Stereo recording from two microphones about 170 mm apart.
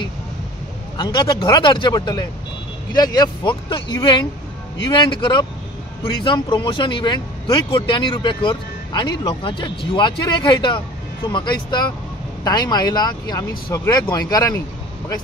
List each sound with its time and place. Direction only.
0.9 s speech: 25° left (ahead or behind)